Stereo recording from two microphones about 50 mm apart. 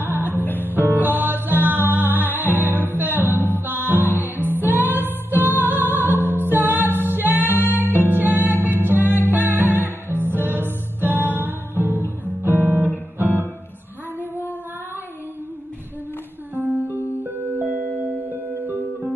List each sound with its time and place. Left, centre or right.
0.0 s music: right
12.3 s guitar: right
16.5 s music: right